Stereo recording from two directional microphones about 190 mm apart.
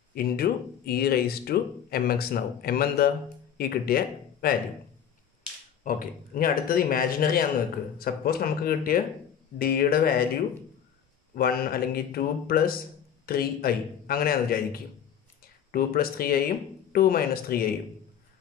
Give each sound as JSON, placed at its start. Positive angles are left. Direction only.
{"t": 0.1, "sound": "speech", "side_deg": 55}
{"t": 5.9, "sound": "speech", "side_deg": 50}
{"t": 11.3, "sound": "speech", "side_deg": 50}